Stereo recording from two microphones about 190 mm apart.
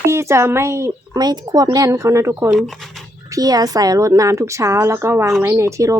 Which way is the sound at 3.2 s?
20° right (ahead or behind).